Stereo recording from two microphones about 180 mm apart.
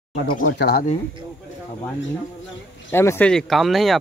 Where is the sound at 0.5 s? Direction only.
65° left (ahead or behind).